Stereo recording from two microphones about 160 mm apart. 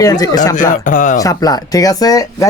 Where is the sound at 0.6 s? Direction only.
55° left (ahead or behind).